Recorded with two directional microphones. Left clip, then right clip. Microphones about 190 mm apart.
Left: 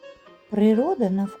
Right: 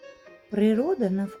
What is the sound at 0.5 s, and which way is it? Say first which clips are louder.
Speech: left 3 dB; 10° left (ahead or behind).